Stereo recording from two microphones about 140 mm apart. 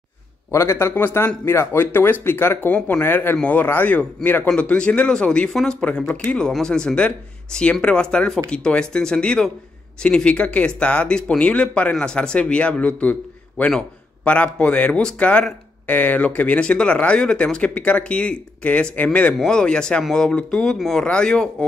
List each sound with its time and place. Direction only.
0.5 s speech: 20° left (ahead or behind)